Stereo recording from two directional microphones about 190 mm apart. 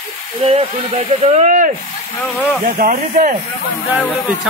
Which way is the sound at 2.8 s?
45° right (ahead or behind).